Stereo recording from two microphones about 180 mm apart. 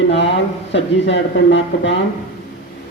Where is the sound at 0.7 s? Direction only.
85° left.